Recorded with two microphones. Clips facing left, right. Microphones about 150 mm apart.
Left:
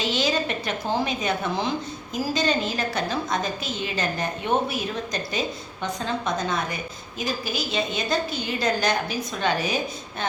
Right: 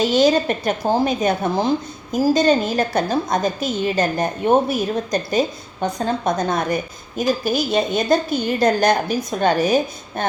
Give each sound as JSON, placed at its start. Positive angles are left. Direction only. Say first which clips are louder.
{"t": 0.0, "sound": "a woman's voice", "louder": "right 9 dB", "side_deg": -45}